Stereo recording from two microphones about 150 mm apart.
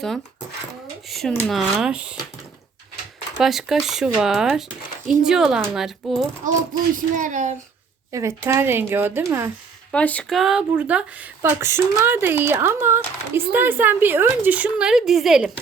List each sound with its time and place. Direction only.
1.5 s speech: centre (ahead or behind)
3.3 s speech: centre (ahead or behind)
6.9 s speech: 60° right (ahead or behind)
8.1 s a woman's voice: 20° right (ahead or behind)
9.9 s speech: 10° left (ahead or behind)